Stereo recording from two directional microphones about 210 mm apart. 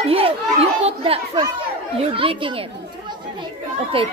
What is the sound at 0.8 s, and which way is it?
Children playing, 25° right (ahead or behind).